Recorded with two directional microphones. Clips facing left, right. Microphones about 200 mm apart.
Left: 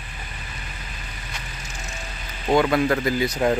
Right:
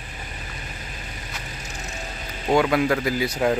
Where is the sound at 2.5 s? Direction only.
10° right (ahead or behind).